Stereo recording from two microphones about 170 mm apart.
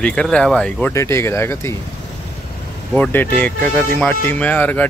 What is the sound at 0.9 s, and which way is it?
Speech, 15° left (ahead or behind).